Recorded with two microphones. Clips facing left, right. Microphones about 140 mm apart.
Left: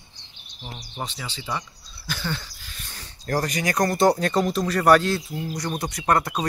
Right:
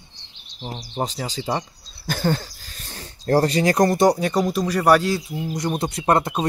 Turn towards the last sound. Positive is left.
turn(degrees=-25)  # may be behind; listen again after turning